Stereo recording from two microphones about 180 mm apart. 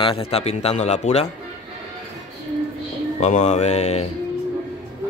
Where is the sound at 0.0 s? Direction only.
30° left (ahead or behind).